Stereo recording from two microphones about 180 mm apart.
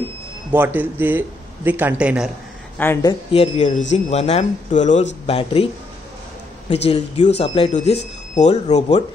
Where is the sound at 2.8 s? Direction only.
15° left (ahead or behind).